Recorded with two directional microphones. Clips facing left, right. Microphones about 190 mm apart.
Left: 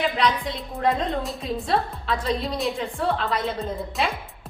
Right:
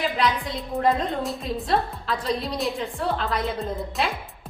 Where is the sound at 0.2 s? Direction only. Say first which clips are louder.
Left 1 dB; centre (ahead or behind).